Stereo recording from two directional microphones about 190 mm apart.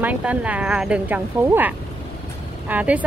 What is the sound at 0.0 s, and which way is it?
Speech, 5° right (ahead or behind).